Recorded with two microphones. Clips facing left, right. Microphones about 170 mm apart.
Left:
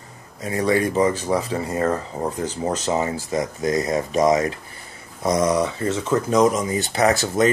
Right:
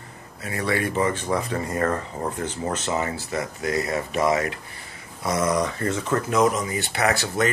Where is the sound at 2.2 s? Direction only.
35° left (ahead or behind).